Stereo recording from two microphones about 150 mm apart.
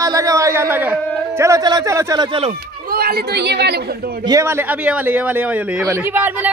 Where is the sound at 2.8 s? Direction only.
85° right.